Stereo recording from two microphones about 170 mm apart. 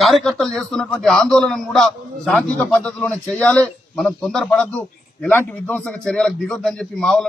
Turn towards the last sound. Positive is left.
turn(degrees=5)  # may be behind; listen again after turning